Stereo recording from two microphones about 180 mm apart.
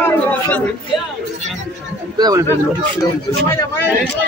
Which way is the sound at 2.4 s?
15° left (ahead or behind).